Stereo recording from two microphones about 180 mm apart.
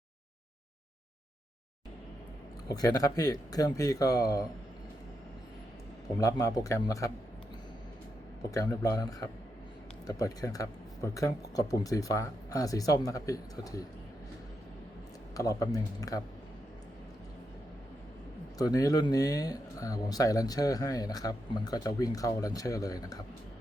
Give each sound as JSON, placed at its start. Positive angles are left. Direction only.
{"t": 2.7, "sound": "speech", "side_deg": 20}
{"t": 6.1, "sound": "a man's voice", "side_deg": 20}
{"t": 8.4, "sound": "speech", "side_deg": 20}
{"t": 15.4, "sound": "speech", "side_deg": 20}
{"t": 18.5, "sound": "speech", "side_deg": 20}